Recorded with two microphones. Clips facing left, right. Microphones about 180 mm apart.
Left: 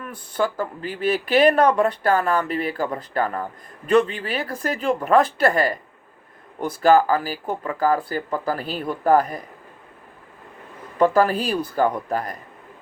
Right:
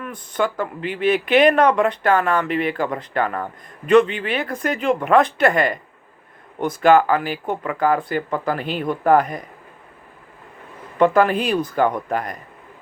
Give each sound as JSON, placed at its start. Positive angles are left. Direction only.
{"t": 0.0, "sound": "speech", "side_deg": 35}
{"t": 11.0, "sound": "speech", "side_deg": 35}